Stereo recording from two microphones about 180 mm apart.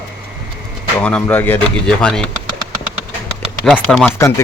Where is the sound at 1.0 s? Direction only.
10° left (ahead or behind).